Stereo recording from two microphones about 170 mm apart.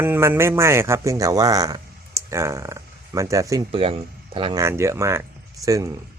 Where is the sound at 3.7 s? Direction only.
35° right (ahead or behind).